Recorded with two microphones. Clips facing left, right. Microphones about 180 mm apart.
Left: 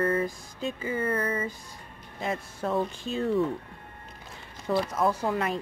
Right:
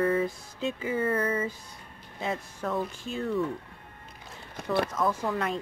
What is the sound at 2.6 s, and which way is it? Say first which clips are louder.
Speech: left 3 dB; 20° left (ahead or behind).